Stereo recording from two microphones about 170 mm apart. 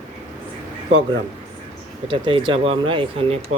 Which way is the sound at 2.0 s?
30° right (ahead or behind).